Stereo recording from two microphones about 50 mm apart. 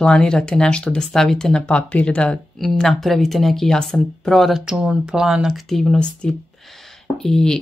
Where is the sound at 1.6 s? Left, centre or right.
Left.